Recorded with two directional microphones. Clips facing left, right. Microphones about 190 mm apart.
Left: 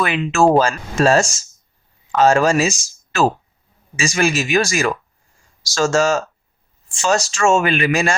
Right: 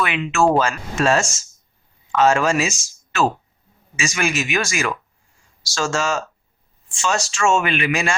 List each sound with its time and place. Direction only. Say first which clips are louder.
0.0 s speech: left 3 dB; 35° left (ahead or behind)